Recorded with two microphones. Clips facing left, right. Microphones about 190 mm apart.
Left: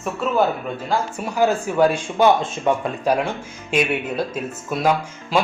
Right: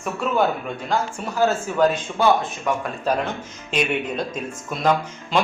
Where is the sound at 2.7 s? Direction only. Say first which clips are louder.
Left 4 dB; 25° left (ahead or behind).